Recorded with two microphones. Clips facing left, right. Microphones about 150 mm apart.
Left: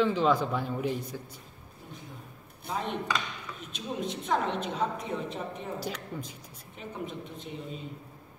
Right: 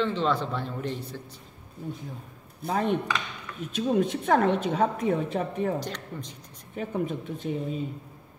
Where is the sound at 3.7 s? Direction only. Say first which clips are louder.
Right 10 dB; 55° right (ahead or behind).